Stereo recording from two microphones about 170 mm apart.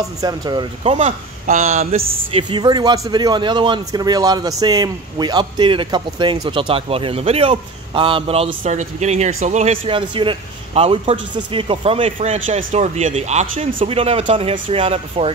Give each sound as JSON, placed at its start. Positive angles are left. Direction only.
{"t": 0.2, "sound": "speech", "side_deg": -25}
{"t": 0.9, "sound": "speech", "side_deg": -45}
{"t": 12.2, "sound": "a man's voice", "side_deg": -50}